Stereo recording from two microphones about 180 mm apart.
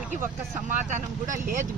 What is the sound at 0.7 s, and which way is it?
Speech, 45° right (ahead or behind).